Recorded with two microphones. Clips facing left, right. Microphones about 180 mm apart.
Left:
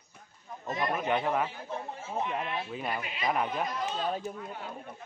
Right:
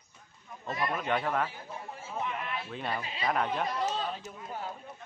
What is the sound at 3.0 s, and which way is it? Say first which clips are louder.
Speech: left 1 dB; 30° right (ahead or behind).